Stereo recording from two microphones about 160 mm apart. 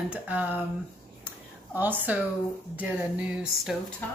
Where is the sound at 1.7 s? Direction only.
10° right (ahead or behind).